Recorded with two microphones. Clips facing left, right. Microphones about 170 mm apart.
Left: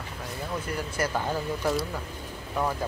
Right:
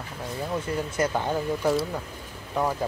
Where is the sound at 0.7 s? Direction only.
20° right (ahead or behind).